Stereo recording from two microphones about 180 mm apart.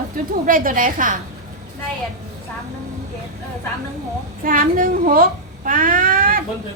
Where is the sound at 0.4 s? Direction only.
50° right (ahead or behind).